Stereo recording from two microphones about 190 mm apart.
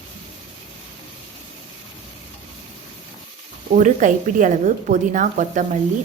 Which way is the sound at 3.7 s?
40° right (ahead or behind).